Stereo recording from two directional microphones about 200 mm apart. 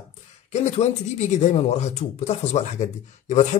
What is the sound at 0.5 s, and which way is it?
Speech, 35° left (ahead or behind).